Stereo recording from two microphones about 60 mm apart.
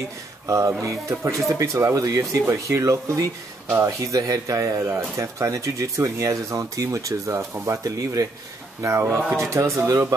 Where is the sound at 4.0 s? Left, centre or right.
Right.